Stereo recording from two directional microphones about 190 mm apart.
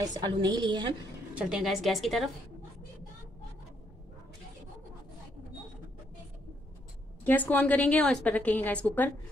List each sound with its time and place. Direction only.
0.0 s a woman's voice: 20° right (ahead or behind)
1.3 s a woman's voice: 5° right (ahead or behind)
7.2 s a woman's voice: 10° left (ahead or behind)